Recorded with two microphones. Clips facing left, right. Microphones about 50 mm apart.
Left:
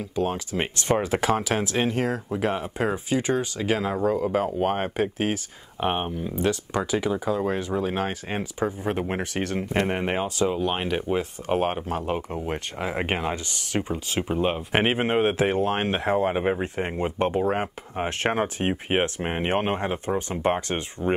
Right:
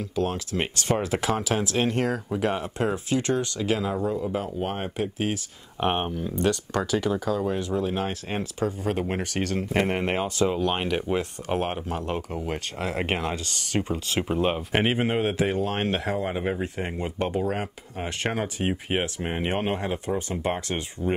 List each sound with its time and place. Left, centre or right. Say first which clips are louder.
0.2 s speech: left 1 dB; centre
1.0 s speech: left 2 dB; left
1.3 s speech: left 1 dB; centre
4.1 s speech: left 4 dB; left
4.4 s speech: left 5 dB; left
5.8 s speech: even; centre
6.1 s speech: even; centre
14.7 s speech: left 1 dB; left